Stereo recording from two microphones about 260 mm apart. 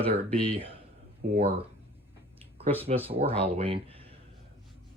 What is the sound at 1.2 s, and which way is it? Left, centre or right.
Speech, right.